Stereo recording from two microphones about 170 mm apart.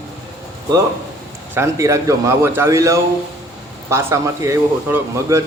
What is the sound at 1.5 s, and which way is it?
Speech, 15° right (ahead or behind).